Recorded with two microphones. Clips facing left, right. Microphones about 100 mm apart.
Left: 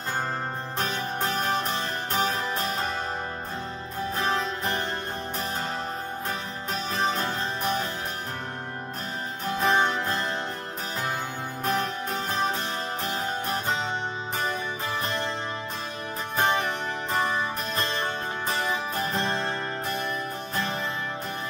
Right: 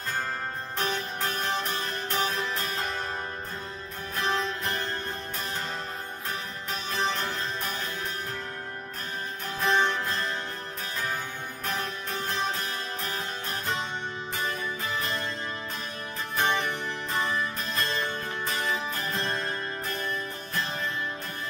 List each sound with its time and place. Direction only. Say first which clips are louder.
1.3 s music: left 3 dB; 35° left (ahead or behind)
4.2 s music: even; 35° left (ahead or behind)
9.7 s music: left 1 dB; 35° left (ahead or behind)
11.6 s music: left 6 dB; 35° left (ahead or behind)
16.3 s music: left 2 dB; 35° left (ahead or behind)